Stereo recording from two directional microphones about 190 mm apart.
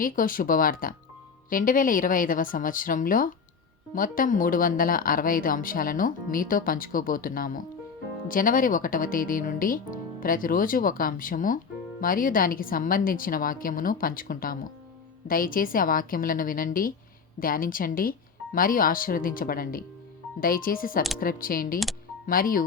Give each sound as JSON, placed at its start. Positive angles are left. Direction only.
{"t": 0.0, "sound": "speech", "side_deg": 45}